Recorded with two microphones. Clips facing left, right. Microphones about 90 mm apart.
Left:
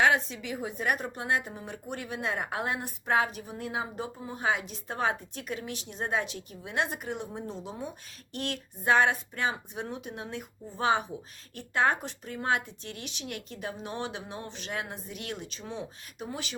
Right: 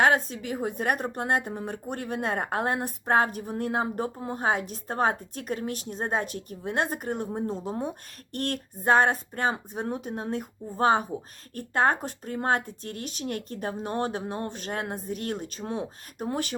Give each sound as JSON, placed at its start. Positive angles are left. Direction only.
{"t": 0.3, "sound": "speech", "side_deg": -45}